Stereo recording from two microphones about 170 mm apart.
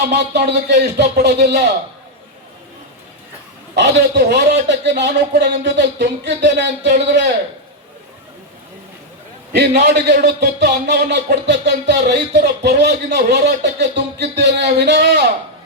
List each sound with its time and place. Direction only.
0.1 s a man's voice: 80° right
3.8 s a man's voice: 80° right
9.5 s a man's voice: 80° right